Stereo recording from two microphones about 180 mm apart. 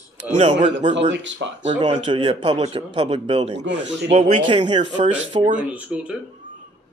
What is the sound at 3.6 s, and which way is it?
Speech, 80° right.